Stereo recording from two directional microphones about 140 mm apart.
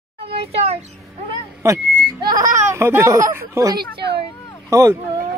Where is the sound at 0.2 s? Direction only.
45° right (ahead or behind).